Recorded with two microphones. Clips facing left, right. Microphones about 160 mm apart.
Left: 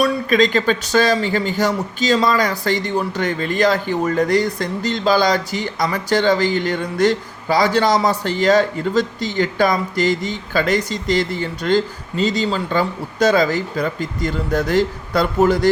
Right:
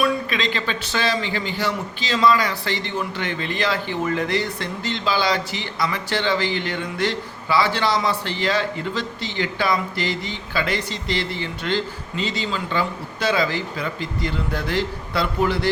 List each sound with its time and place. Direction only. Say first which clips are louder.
0.0 s speech: left 6 dB; 45° left (ahead or behind)